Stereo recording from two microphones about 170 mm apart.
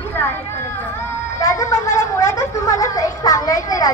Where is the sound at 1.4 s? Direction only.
20° left (ahead or behind).